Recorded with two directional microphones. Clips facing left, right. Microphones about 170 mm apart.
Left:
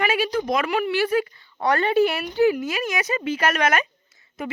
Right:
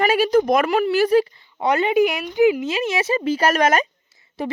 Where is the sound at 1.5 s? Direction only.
20° right (ahead or behind).